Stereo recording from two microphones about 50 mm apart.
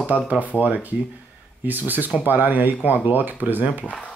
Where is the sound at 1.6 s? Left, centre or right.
Right.